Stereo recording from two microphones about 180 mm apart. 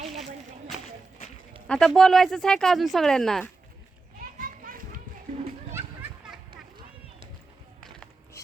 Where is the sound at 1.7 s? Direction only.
Centre (ahead or behind).